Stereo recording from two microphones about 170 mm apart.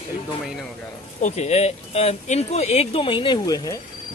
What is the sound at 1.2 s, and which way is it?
Speech, 40° left (ahead or behind).